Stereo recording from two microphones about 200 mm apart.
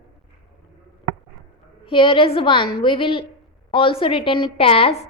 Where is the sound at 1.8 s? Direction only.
25° left (ahead or behind).